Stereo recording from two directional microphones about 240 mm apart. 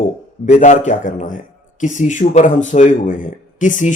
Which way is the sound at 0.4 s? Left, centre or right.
Left.